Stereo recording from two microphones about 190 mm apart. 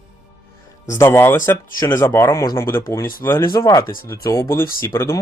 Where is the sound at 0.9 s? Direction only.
15° left (ahead or behind).